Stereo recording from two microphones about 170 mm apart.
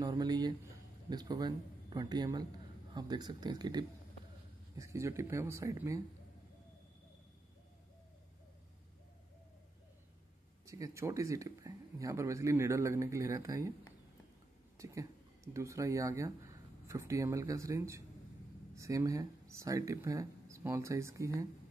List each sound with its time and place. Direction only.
0.0 s a man's voice: 25° right (ahead or behind)
10.6 s speech: 20° right (ahead or behind)
14.8 s speech: 20° right (ahead or behind)